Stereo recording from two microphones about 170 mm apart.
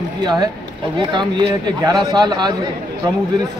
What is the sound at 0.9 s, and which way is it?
A man's voice, 25° right (ahead or behind).